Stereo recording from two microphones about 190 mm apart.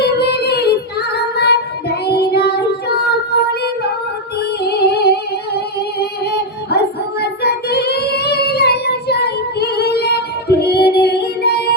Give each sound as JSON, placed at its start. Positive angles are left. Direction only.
{"t": 0.0, "sound": "child singing", "side_deg": 60}
{"t": 4.4, "sound": "music", "side_deg": 60}